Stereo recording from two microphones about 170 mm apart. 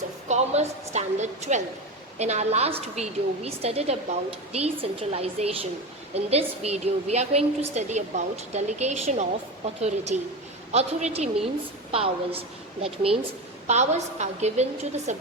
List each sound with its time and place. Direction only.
0.3 s a woman's voice: 40° right (ahead or behind)